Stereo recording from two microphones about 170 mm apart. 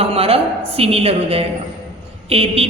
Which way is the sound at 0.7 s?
35° right (ahead or behind).